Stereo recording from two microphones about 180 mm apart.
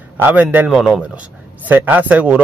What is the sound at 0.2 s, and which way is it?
A man's voice, 10° right (ahead or behind).